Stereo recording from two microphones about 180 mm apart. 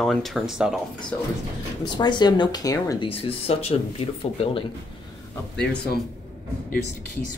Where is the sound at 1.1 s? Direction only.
10° left (ahead or behind).